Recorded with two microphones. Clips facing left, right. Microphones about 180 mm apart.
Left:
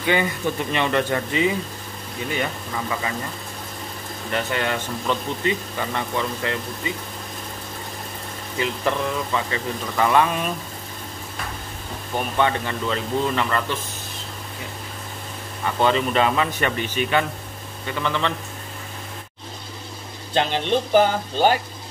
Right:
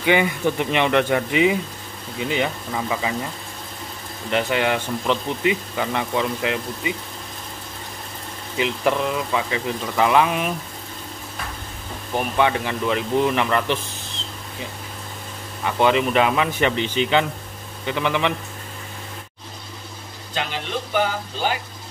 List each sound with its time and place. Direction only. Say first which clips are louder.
0.0 s speech: right 3 dB; 15° right (ahead or behind)
4.3 s speech: right 4 dB; 15° right (ahead or behind)
8.5 s speech: right 3 dB; 15° right (ahead or behind)
12.2 s speech: right 2 dB; 10° right (ahead or behind)
15.6 s speech: right 2 dB; 10° right (ahead or behind)
20.3 s speech: left 6 dB; 30° left (ahead or behind)